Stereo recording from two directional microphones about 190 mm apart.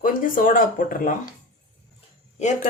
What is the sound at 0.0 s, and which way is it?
Speech, 45° left (ahead or behind).